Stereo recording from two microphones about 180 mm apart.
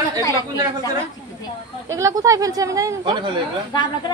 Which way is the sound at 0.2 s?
20° left (ahead or behind).